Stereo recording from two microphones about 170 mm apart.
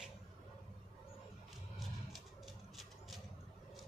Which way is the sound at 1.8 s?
Centre (ahead or behind).